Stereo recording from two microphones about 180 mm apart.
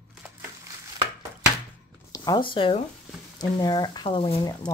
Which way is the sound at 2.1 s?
25° left (ahead or behind).